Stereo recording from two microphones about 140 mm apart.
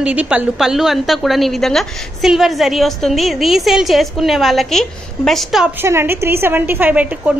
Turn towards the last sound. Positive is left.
turn(degrees=-10)  # may be behind; listen again after turning